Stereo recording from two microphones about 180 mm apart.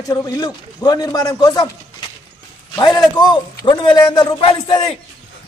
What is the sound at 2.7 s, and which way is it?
A man's voice, 20° left (ahead or behind).